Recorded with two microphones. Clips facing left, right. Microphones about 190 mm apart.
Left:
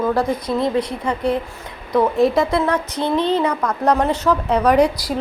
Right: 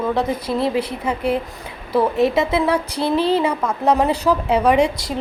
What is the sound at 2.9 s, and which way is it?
Speech, 35° right (ahead or behind).